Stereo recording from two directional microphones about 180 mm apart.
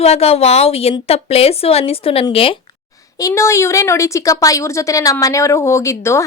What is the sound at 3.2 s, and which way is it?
Speech, 15° left (ahead or behind).